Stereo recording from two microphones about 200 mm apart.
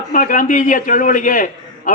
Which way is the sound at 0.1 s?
40° left (ahead or behind).